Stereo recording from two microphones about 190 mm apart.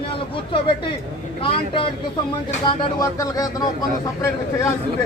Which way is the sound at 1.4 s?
30° left (ahead or behind).